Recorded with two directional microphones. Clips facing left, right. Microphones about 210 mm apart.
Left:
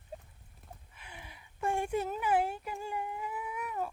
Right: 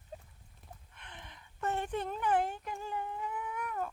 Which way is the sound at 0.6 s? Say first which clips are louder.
Left 1 dB; 5° left (ahead or behind).